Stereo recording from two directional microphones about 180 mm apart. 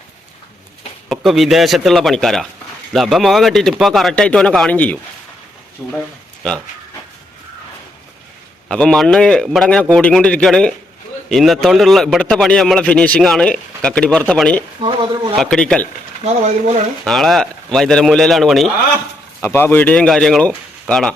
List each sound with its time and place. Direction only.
1.1 s a man's voice: centre (ahead or behind)
5.8 s speech: 10° right (ahead or behind)
8.7 s a man's voice: 5° left (ahead or behind)
14.8 s speech: 30° right (ahead or behind)
15.4 s a man's voice: 5° left (ahead or behind)
16.2 s speech: 40° right (ahead or behind)
17.0 s a man's voice: centre (ahead or behind)
19.4 s a man's voice: 10° left (ahead or behind)